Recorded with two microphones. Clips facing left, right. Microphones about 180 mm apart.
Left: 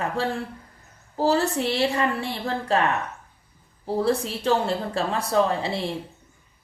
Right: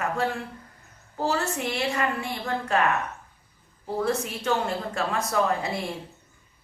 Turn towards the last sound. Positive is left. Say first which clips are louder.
# left 3 dB
turn(degrees=30)  # may be behind; listen again after turning